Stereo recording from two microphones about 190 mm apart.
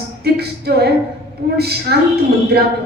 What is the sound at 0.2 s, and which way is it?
Speech, 55° right (ahead or behind).